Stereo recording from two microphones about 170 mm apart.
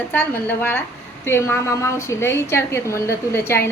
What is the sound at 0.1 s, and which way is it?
A woman's voice, 10° left (ahead or behind).